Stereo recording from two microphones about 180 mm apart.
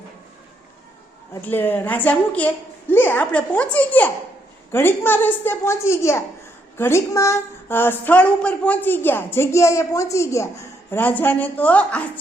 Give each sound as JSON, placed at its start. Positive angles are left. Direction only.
{"t": 1.3, "sound": "a woman's voice", "side_deg": 10}